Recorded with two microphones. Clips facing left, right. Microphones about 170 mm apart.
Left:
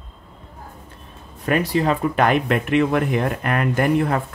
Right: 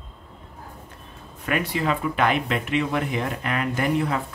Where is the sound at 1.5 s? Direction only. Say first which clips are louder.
Left 5 dB; 35° left (ahead or behind).